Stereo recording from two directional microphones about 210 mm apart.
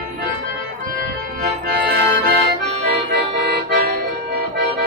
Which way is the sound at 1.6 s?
45° right (ahead or behind).